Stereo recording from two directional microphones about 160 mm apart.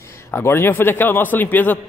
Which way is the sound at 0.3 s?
15° left (ahead or behind).